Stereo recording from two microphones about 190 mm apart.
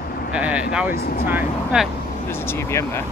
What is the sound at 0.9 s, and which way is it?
Speech, 55° left (ahead or behind).